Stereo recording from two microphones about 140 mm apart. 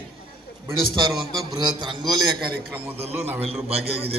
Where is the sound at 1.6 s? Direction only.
35° right (ahead or behind).